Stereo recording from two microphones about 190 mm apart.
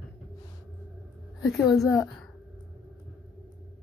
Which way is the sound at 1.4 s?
20° left (ahead or behind).